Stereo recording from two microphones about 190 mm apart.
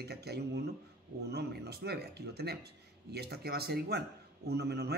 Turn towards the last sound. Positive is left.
turn(degrees=-60)  # may be behind; listen again after turning